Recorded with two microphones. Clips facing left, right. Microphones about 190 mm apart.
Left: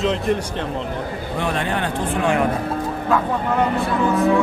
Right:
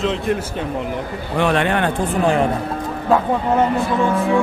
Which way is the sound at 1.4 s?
75° right (ahead or behind).